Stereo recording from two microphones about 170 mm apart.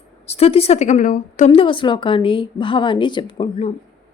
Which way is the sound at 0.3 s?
35° left (ahead or behind).